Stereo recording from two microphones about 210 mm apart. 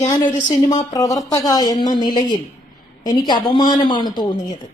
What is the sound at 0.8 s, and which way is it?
Speech, 15° left (ahead or behind).